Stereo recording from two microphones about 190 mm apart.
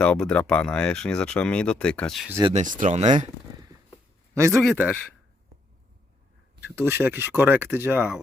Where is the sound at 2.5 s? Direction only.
40° right (ahead or behind).